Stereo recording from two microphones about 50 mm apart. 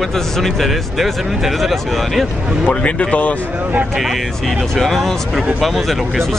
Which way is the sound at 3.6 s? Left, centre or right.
Right.